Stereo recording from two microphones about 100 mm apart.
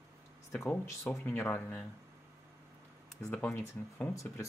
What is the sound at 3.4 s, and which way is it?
Speech, 20° left (ahead or behind).